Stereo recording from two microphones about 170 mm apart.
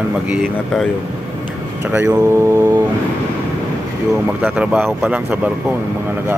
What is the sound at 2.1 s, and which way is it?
Speech, 20° right (ahead or behind).